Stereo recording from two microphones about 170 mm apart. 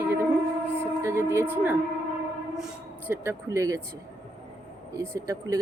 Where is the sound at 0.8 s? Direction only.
15° right (ahead or behind).